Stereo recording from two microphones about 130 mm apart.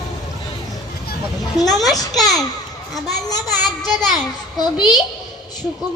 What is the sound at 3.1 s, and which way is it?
Speech, 30° left (ahead or behind).